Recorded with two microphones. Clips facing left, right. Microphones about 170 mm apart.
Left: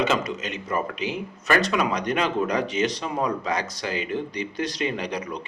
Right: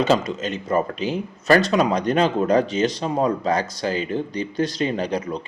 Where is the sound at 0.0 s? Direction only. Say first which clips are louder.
Right 4 dB; 30° right (ahead or behind).